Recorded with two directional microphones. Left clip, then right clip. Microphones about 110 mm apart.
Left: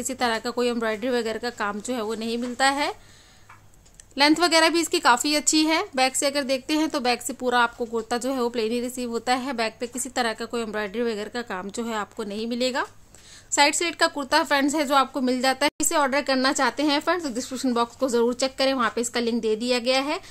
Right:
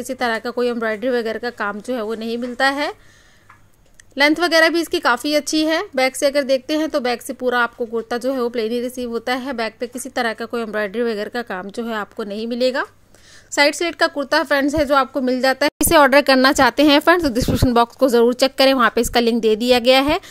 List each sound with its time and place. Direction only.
0.0 s a woman's voice: 25° right (ahead or behind)
4.1 s a woman's voice: 25° right (ahead or behind); by 11.4 s 50° right (ahead or behind)
11.4 s a woman's voice: 35° right (ahead or behind)
17.0 s a woman's voice: 90° right